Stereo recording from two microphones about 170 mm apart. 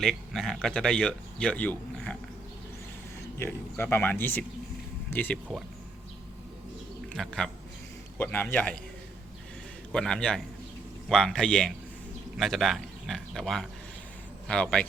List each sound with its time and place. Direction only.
0.0 s speech: centre (ahead or behind)
3.3 s speech: 15° left (ahead or behind)
7.1 s speech: 5° left (ahead or behind)
9.9 s a man's voice: 5° left (ahead or behind)